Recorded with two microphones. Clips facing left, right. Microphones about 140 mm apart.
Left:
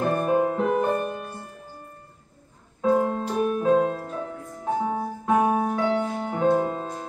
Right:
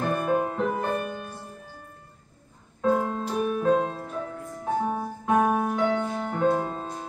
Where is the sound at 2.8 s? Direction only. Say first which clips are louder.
Left 3 dB; 5° left (ahead or behind).